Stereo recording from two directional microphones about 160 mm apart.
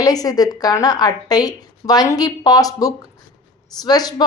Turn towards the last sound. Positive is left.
turn(degrees=25)  # may be behind; listen again after turning